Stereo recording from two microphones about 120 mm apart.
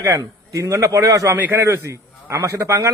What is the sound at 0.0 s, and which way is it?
A man's voice, 25° right (ahead or behind).